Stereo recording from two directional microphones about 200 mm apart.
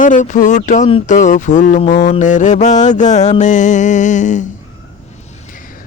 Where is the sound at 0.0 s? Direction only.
40° left (ahead or behind).